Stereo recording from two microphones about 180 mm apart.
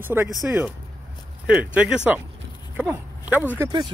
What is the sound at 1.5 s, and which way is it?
Speech, 5° right (ahead or behind).